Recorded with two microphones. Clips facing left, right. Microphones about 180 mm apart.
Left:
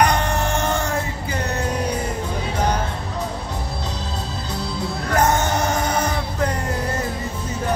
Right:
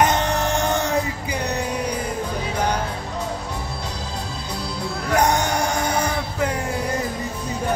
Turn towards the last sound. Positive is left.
turn(degrees=-10)  # may be behind; listen again after turning